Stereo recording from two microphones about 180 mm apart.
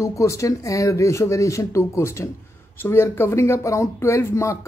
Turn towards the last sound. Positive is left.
turn(degrees=15)  # may be behind; listen again after turning